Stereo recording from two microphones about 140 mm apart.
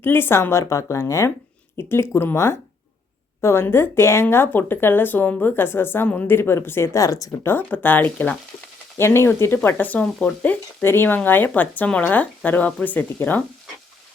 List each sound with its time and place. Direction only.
0.0 s speech: 15° left (ahead or behind)